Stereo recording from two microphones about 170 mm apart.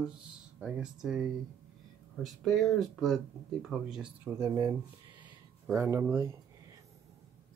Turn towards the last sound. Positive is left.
turn(degrees=-15)  # may be behind; listen again after turning